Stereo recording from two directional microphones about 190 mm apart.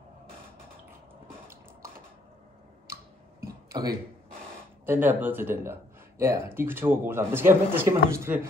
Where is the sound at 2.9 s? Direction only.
50° right (ahead or behind).